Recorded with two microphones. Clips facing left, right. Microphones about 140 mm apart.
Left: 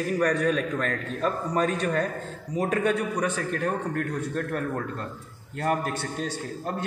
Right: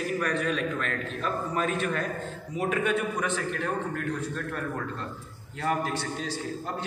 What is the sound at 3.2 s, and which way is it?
Speech, 40° left (ahead or behind).